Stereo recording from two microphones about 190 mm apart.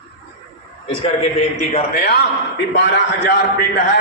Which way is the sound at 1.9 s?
60° left (ahead or behind).